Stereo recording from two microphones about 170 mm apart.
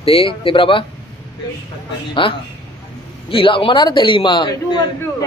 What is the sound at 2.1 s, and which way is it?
A man's voice, 30° left (ahead or behind).